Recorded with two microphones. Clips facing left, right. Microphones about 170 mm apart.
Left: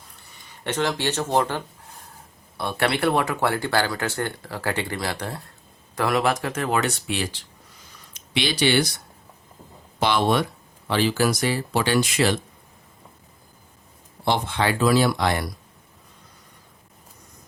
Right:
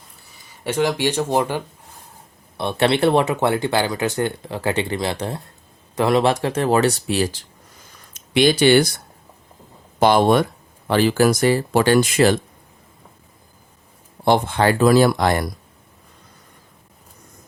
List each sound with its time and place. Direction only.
0.3 s speech: 10° right (ahead or behind)
2.6 s speech: 25° right (ahead or behind)
8.1 s speech: 50° right (ahead or behind)
10.0 s speech: 45° right (ahead or behind)
14.3 s speech: 50° right (ahead or behind)